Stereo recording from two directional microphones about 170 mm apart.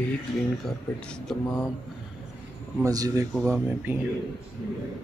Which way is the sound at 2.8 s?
20° right (ahead or behind).